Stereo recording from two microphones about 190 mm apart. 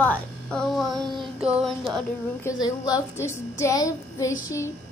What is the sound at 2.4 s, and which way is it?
A woman's voice, 15° left (ahead or behind).